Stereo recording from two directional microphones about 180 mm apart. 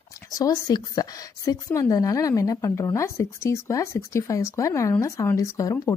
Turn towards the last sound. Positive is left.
turn(degrees=20)  # may be behind; listen again after turning